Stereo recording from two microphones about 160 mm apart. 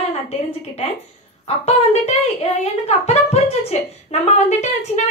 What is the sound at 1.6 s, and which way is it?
Speech, 40° left (ahead or behind).